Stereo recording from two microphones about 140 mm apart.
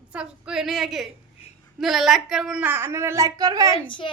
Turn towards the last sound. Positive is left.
turn(degrees=35)  # may be behind; listen again after turning